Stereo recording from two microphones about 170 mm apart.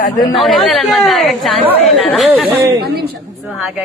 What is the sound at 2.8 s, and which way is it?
Speech, 70° right (ahead or behind).